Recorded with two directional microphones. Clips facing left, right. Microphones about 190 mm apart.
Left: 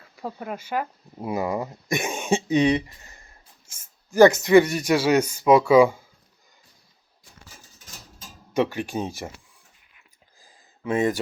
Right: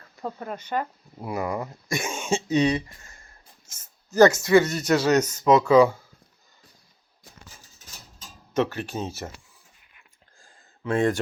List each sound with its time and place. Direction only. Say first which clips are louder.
0.0 s speech: even; 5° left (ahead or behind)
1.2 s speech: left 3 dB; 20° left (ahead or behind)
8.5 s speech: left 2 dB; 10° left (ahead or behind)
10.3 s a sound: even; 5° left (ahead or behind)